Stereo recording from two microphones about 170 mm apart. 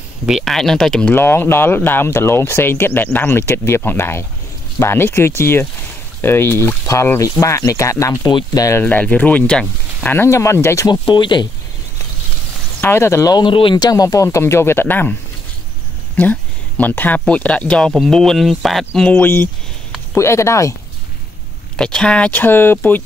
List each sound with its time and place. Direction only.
0.3 s speech: centre (ahead or behind); by 11.0 s 15° left (ahead or behind)
11.1 s speech: 30° left (ahead or behind)
12.8 s speech: 15° left (ahead or behind)
16.2 s speech: 10° left (ahead or behind)
21.7 s speech: 5° left (ahead or behind)